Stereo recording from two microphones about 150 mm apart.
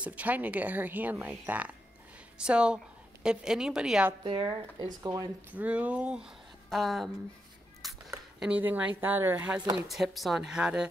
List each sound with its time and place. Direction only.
0.0 s a woman's voice: 10° right (ahead or behind)
4.2 s speech: 30° right (ahead or behind)
5.6 s speech: 10° right (ahead or behind)
8.4 s speech: 10° right (ahead or behind)
9.8 s speech: centre (ahead or behind)